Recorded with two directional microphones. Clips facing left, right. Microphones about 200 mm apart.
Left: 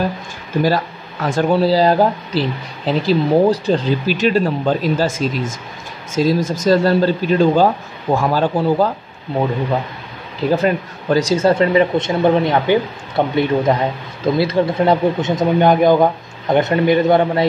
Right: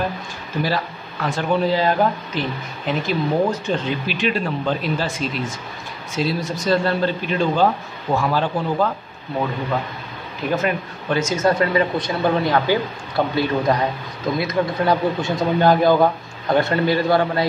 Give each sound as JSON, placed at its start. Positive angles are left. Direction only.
{"t": 1.2, "sound": "a man's voice", "side_deg": 40}
{"t": 10.5, "sound": "speech", "side_deg": 35}